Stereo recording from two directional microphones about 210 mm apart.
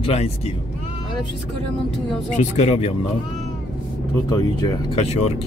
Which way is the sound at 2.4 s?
35° left (ahead or behind).